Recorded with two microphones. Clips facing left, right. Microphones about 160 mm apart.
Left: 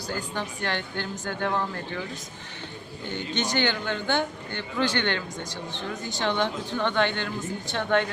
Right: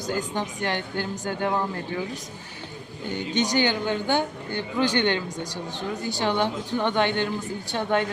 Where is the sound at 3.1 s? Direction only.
15° right (ahead or behind).